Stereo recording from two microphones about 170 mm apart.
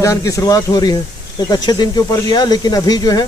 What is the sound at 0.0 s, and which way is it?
Speech, 20° left (ahead or behind).